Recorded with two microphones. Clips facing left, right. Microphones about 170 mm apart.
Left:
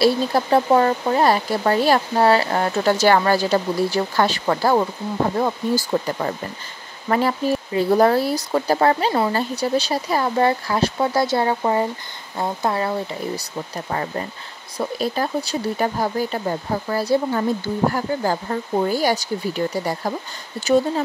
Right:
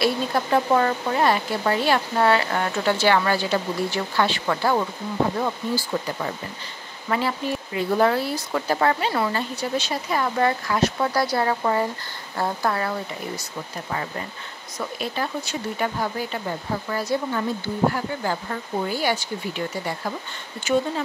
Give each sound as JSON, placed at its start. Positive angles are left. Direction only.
{"t": 0.0, "sound": "speech", "side_deg": 35}
{"t": 13.8, "sound": "speech", "side_deg": 40}